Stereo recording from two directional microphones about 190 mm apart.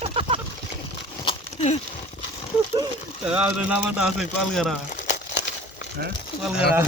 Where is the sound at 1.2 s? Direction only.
30° left (ahead or behind).